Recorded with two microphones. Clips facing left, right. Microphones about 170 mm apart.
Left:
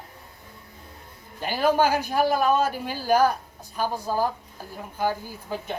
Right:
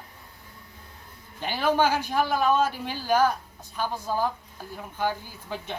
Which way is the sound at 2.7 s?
45° left (ahead or behind).